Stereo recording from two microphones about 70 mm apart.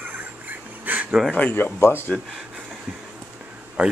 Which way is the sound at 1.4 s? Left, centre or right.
Left.